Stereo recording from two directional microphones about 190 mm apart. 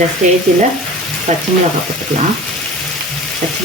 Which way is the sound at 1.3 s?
35° right (ahead or behind).